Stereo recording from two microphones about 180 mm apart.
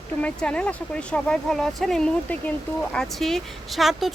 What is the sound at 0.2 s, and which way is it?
Speech, 5° left (ahead or behind).